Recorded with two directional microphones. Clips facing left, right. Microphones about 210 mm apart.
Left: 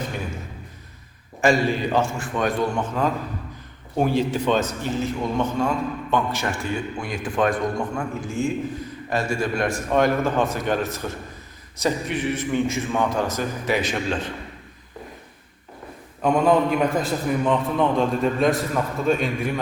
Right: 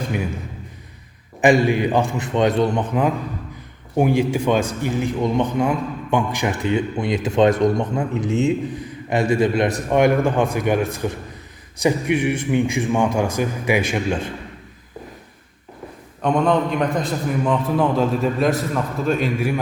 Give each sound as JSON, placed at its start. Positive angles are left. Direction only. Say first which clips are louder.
{"t": 1.4, "sound": "a man's voice", "louder": "right 4 dB", "side_deg": -15}
{"t": 16.2, "sound": "a man's voice", "louder": "even", "side_deg": 5}